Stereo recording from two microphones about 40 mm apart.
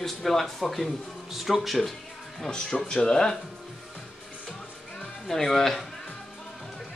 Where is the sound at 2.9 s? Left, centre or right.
Centre.